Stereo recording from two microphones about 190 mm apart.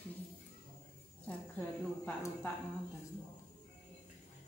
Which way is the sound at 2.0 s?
10° left (ahead or behind).